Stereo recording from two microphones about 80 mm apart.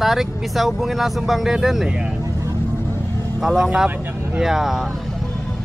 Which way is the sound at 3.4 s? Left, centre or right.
Centre.